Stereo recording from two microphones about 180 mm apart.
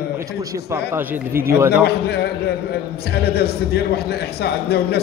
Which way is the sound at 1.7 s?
65° left (ahead or behind).